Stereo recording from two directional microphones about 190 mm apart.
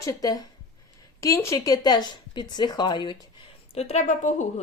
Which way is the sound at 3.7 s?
35° left (ahead or behind).